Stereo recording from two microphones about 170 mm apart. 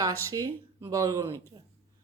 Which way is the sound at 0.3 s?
20° right (ahead or behind).